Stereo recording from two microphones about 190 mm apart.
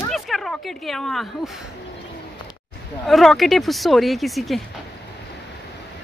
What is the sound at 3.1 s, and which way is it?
Speech, centre (ahead or behind).